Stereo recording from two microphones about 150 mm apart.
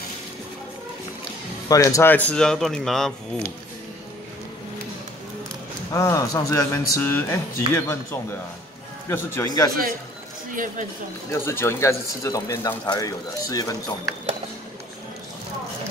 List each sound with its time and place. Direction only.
1.7 s speech: 20° left (ahead or behind); by 3.4 s 5° left (ahead or behind)
5.9 s a man's voice: 20° left (ahead or behind)
10.5 s speech: 60° right (ahead or behind)
11.2 s speech: 15° left (ahead or behind)